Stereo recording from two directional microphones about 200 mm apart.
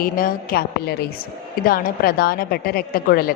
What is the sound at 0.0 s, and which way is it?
A woman's voice, 45° left (ahead or behind).